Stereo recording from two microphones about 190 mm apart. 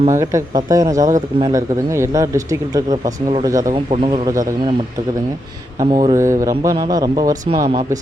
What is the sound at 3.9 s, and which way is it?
Speech, 30° right (ahead or behind).